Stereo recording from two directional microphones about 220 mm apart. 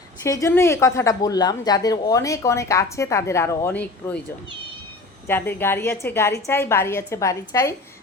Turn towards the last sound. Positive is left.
turn(degrees=15)  # may be behind; listen again after turning